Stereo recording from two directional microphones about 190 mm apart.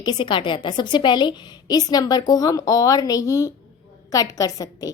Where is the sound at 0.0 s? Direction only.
20° left (ahead or behind).